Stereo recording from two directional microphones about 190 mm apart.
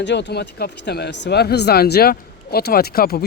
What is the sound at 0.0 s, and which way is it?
Speech, 65° left (ahead or behind).